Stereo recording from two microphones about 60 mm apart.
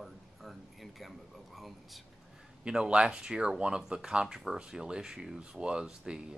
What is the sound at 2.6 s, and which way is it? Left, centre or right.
Speech, centre.